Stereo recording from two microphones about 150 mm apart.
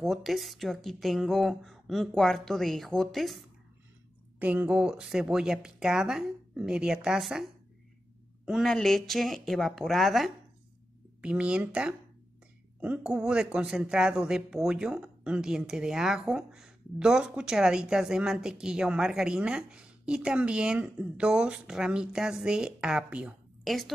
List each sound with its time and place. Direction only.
0.0 s speech: centre (ahead or behind)
4.4 s speech: 10° right (ahead or behind)